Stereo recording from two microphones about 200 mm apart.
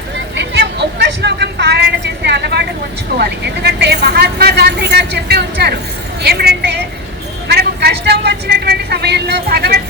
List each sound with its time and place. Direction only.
0.3 s vehicle: 60° right (ahead or behind)
3.2 s a woman's voice: 55° right (ahead or behind)